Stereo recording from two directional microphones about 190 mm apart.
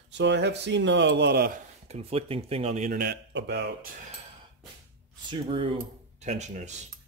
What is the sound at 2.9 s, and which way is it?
Speech, 55° right (ahead or behind).